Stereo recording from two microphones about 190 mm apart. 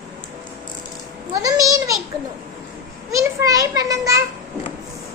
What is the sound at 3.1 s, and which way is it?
Children playing, 15° right (ahead or behind).